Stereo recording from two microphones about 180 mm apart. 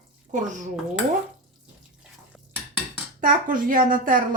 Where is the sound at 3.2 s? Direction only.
50° right (ahead or behind).